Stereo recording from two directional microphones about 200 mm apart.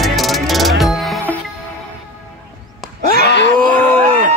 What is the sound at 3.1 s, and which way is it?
Groan, 60° left (ahead or behind).